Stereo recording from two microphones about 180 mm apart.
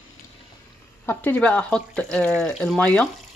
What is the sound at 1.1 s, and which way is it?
Speech, 10° left (ahead or behind).